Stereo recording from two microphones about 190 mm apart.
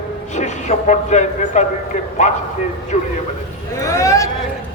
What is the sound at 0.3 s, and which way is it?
A man's voice, 40° left (ahead or behind).